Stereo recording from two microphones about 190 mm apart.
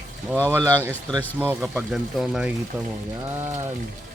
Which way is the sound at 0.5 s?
10° right (ahead or behind).